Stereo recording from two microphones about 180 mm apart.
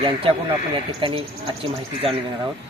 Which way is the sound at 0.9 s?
30° right (ahead or behind).